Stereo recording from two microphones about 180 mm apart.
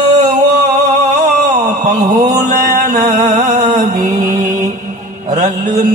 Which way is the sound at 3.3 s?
40° right (ahead or behind).